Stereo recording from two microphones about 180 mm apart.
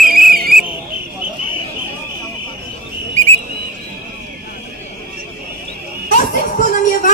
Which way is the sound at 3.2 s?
40° right (ahead or behind).